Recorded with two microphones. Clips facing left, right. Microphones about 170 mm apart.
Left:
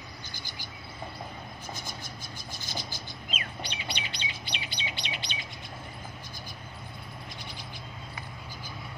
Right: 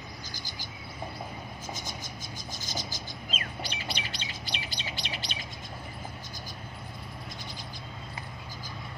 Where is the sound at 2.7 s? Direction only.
40° right (ahead or behind).